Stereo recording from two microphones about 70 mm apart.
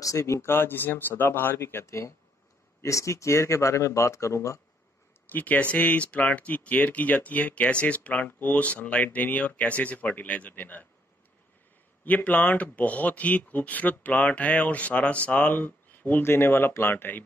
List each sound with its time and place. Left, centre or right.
0.0 s speech: left
0.4 s speech: left
5.3 s speech: left
12.0 s speech: left